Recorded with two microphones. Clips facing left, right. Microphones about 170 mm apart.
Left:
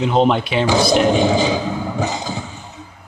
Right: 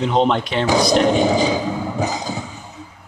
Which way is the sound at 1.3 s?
25° left (ahead or behind).